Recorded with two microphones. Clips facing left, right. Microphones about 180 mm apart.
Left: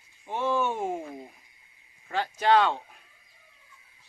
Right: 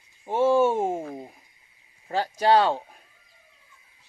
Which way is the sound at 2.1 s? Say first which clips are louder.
Right 3 dB; 35° right (ahead or behind).